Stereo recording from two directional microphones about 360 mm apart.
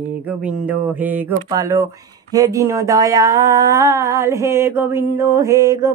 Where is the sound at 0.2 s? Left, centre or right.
Centre.